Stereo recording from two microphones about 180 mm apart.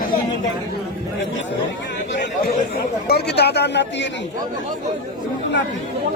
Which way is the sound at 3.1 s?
65° left (ahead or behind).